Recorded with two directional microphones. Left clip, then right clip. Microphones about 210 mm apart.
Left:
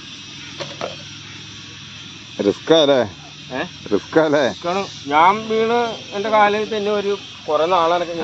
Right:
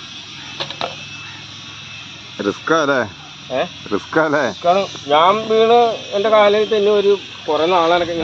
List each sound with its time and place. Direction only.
2.3 s speech: 15° left (ahead or behind)
4.6 s speech: 45° right (ahead or behind)